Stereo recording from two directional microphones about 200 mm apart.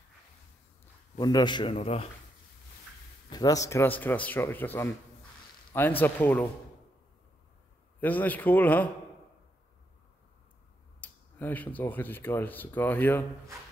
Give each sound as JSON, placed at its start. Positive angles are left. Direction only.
{"t": 1.1, "sound": "a man's voice", "side_deg": 20}
{"t": 3.3, "sound": "a man's voice", "side_deg": 20}
{"t": 8.0, "sound": "a man's voice", "side_deg": 10}
{"t": 11.0, "sound": "speech", "side_deg": 10}